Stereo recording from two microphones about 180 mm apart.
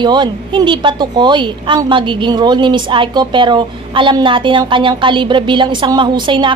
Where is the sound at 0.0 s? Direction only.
25° right (ahead or behind).